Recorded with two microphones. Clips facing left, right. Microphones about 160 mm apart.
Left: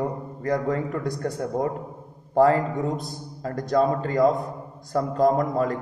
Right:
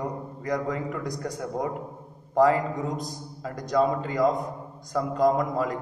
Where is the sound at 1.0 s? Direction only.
30° left (ahead or behind).